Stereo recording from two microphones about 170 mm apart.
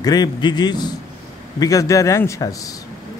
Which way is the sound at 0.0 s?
25° left (ahead or behind).